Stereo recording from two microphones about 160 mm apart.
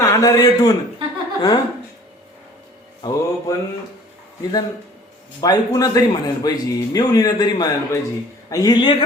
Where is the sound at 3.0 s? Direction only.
30° left (ahead or behind).